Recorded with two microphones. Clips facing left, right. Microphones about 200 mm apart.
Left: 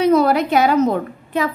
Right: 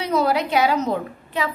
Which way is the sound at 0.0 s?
55° left (ahead or behind).